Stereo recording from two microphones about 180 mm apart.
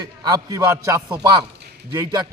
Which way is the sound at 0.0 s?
20° right (ahead or behind).